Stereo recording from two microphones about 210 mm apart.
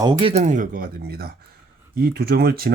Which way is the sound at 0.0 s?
25° right (ahead or behind).